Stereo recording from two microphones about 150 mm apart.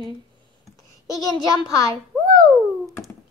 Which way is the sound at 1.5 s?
25° left (ahead or behind).